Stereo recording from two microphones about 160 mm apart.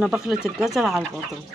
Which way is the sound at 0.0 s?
5° right (ahead or behind).